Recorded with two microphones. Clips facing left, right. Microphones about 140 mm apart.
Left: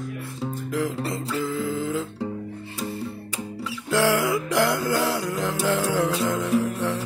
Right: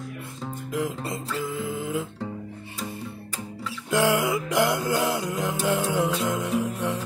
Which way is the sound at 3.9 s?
15° right (ahead or behind).